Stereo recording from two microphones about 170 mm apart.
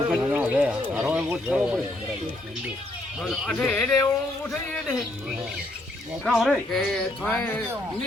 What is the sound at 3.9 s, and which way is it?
Speech, 15° left (ahead or behind).